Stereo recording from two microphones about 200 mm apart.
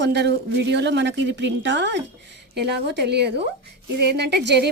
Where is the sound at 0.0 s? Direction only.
55° right (ahead or behind).